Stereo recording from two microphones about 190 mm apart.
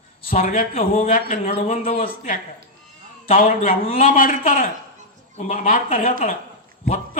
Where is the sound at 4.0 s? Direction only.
45° left (ahead or behind).